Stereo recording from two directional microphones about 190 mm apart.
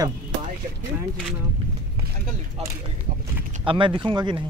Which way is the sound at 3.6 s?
25° right (ahead or behind).